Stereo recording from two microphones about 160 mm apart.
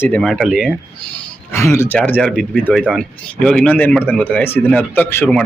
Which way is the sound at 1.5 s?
15° left (ahead or behind).